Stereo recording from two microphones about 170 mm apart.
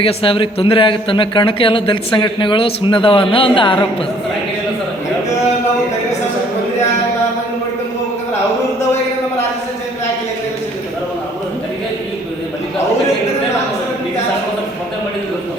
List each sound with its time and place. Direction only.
0.0 s a man's voice: 35° left (ahead or behind)